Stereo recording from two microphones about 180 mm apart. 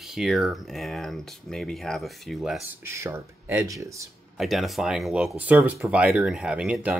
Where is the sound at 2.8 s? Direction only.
15° right (ahead or behind).